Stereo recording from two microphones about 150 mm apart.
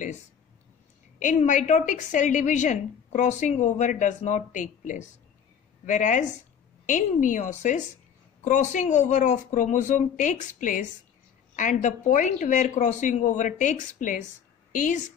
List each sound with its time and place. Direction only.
1.2 s a woman's voice: 55° left (ahead or behind)